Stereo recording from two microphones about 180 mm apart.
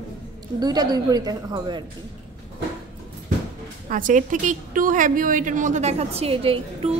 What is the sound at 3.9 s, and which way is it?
A woman's voice, 45° right (ahead or behind).